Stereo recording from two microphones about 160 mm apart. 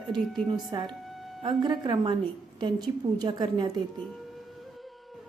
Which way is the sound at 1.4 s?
30° right (ahead or behind).